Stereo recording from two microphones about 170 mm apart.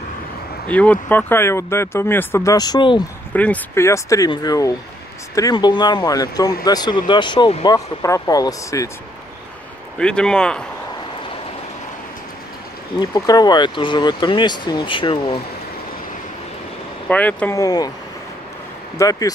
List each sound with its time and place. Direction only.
0.7 s speech: 10° left (ahead or behind); by 3.0 s 25° left (ahead or behind)
3.3 s speech: 10° left (ahead or behind)
9.9 s speech: 5° left (ahead or behind)
13.0 s speech: 25° left (ahead or behind)
17.1 s speech: 5° left (ahead or behind)
17.6 s speech: 20° left (ahead or behind)
18.9 s speech: 20° left (ahead or behind)